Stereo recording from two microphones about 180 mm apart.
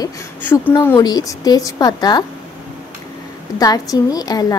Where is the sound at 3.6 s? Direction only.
20° left (ahead or behind).